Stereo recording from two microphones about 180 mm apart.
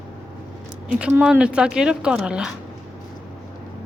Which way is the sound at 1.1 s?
5° right (ahead or behind).